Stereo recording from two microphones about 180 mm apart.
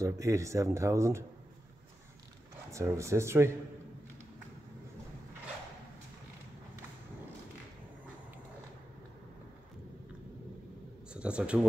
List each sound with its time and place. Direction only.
0.0 s speech: 15° right (ahead or behind)
2.7 s speech: 15° right (ahead or behind)
11.1 s a man's voice: 5° right (ahead or behind)